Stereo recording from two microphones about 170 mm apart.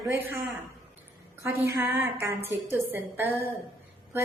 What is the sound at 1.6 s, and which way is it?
A woman's voice, 15° right (ahead or behind).